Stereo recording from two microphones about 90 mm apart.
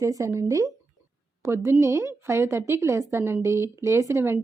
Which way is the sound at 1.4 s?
30° right (ahead or behind).